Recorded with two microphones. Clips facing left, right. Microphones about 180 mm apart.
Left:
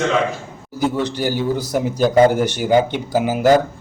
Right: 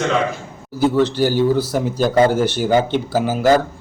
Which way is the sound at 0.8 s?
15° left (ahead or behind).